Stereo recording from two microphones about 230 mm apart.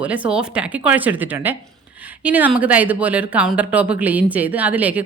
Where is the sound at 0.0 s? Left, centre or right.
Centre.